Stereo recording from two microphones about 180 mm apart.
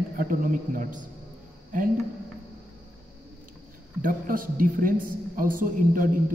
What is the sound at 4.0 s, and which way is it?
A woman's voice, 50° right (ahead or behind).